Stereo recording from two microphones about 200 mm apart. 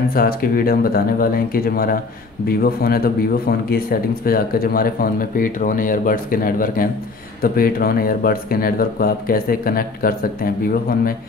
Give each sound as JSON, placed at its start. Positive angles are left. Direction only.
{"t": 0.1, "sound": "speech", "side_deg": 45}